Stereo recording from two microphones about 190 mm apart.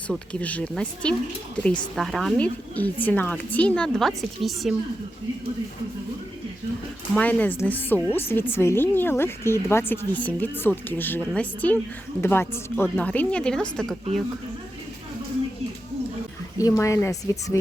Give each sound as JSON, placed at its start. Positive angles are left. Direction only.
{"t": 0.1, "sound": "speech", "side_deg": 5}
{"t": 7.2, "sound": "speech", "side_deg": 10}
{"t": 16.6, "sound": "speech", "side_deg": 15}